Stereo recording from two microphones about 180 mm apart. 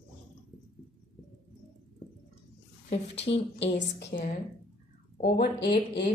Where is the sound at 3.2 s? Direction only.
75° left (ahead or behind); by 5.7 s 60° left (ahead or behind).